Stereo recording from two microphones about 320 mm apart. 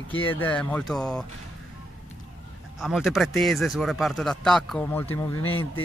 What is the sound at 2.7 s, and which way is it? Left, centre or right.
Speech, centre.